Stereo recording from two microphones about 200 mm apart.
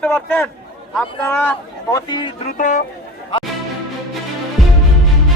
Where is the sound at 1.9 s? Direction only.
20° left (ahead or behind).